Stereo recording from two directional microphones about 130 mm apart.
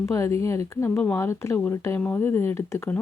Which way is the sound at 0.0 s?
25° left (ahead or behind).